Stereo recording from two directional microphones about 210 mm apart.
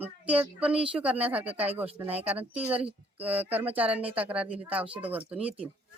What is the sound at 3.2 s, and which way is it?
Speech, 5° right (ahead or behind).